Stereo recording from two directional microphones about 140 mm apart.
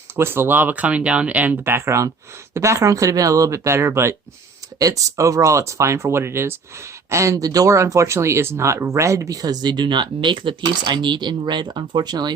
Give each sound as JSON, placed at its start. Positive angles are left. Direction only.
{"t": 0.2, "sound": "speech", "side_deg": -15}